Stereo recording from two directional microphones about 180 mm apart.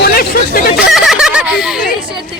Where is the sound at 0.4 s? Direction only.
55° left (ahead or behind).